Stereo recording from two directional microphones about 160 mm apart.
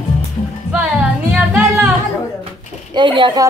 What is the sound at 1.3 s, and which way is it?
Music, 5° right (ahead or behind).